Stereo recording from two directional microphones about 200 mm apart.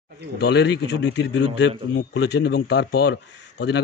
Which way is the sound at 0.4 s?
55° left (ahead or behind).